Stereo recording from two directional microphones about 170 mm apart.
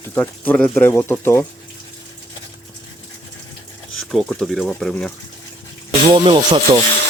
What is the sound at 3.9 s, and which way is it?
Speech, centre (ahead or behind).